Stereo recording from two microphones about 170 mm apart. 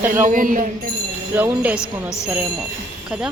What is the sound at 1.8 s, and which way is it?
Speech, 15° left (ahead or behind).